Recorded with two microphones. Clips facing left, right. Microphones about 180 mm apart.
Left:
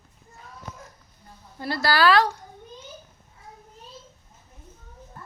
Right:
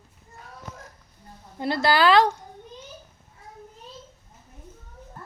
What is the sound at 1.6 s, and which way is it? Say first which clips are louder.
Speech: right 2 dB; 20° right (ahead or behind).